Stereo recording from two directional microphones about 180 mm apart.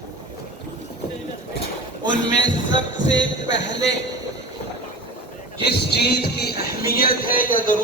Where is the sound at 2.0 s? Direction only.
90° left.